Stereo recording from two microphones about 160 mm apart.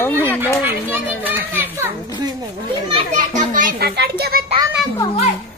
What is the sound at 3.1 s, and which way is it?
Children playing, 55° right (ahead or behind).